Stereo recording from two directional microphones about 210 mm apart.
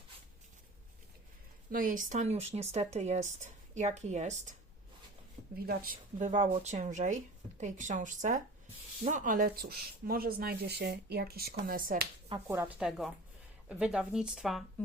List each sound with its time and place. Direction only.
1.7 s speech: 40° right (ahead or behind)
5.5 s speech: 45° right (ahead or behind)
12.3 s speech: 15° right (ahead or behind)